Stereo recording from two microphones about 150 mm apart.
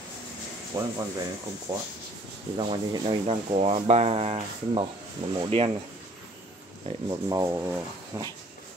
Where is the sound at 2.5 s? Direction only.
35° right (ahead or behind).